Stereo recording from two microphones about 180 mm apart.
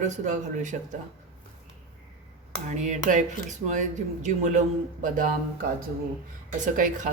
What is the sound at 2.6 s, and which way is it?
A man's voice, 45° right (ahead or behind).